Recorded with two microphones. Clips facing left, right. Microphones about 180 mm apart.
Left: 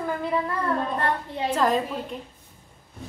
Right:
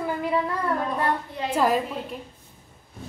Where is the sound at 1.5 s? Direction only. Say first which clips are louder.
Right 1 dB; 10° right (ahead or behind).